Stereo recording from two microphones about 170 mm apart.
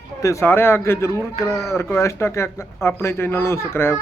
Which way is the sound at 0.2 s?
15° left (ahead or behind).